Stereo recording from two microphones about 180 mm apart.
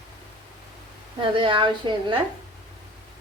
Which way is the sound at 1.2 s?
30° right (ahead or behind).